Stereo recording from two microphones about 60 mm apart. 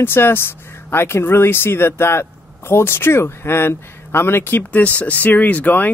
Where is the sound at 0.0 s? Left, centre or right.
Left.